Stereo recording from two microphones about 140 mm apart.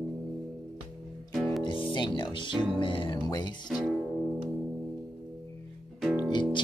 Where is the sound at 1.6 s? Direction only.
35° left (ahead or behind).